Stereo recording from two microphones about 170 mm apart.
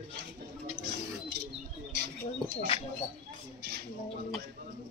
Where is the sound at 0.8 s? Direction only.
70° right (ahead or behind).